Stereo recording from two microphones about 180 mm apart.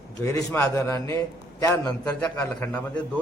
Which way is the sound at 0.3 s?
15° left (ahead or behind).